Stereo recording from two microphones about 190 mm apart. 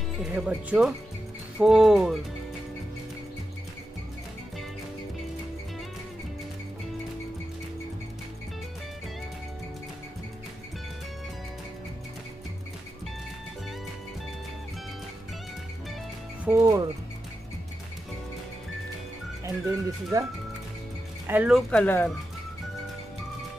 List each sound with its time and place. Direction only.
0.2 s speech: 5° right (ahead or behind)
16.4 s music: 15° right (ahead or behind)
19.4 s music: 15° right (ahead or behind)
21.3 s speech: 5° right (ahead or behind)